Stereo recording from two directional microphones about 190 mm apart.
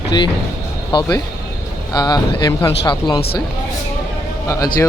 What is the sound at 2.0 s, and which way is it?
Speech, 20° left (ahead or behind).